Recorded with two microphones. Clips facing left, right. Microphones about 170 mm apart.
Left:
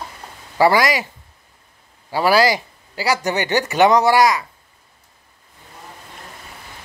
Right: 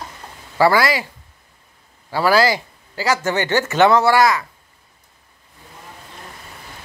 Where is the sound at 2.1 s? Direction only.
15° left (ahead or behind).